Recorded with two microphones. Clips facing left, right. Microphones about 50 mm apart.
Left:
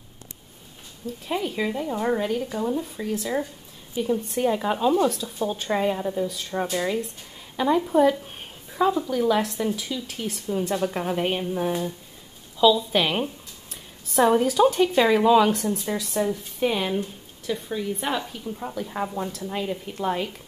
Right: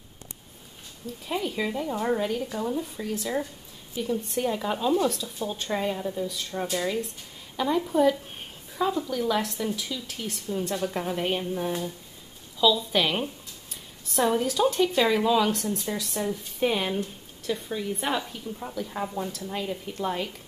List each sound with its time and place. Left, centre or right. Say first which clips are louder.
1.2 s a woman's voice: left 2 dB; centre
12.9 s a woman's voice: left 2 dB; centre